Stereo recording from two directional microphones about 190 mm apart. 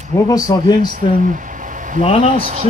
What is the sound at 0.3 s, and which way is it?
Speech, 20° left (ahead or behind).